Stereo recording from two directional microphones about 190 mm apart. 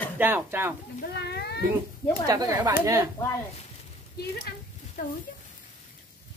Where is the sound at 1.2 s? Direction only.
60° left (ahead or behind).